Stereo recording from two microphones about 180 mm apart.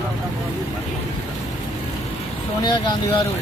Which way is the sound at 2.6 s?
25° left (ahead or behind).